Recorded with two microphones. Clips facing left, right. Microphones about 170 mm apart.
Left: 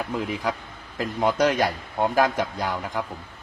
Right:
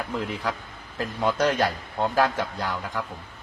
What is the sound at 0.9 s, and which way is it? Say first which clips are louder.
A man's voice: left 2 dB; 15° left (ahead or behind).